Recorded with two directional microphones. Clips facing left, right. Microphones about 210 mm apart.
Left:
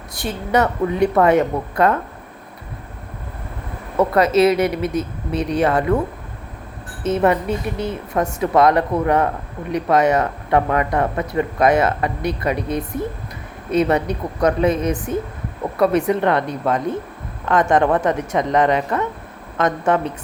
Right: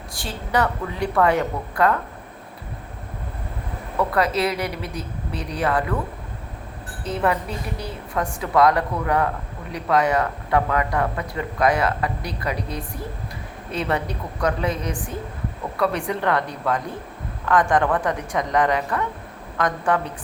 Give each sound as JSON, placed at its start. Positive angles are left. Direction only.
{"t": 0.1, "sound": "speech", "side_deg": 20}
{"t": 4.1, "sound": "speech", "side_deg": 20}
{"t": 7.3, "sound": "speech", "side_deg": 20}